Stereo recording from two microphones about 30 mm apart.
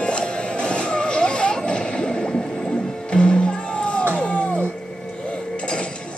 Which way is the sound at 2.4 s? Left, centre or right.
Centre.